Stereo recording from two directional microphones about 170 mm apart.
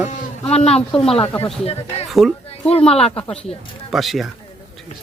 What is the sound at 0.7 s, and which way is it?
Speech, 5° left (ahead or behind).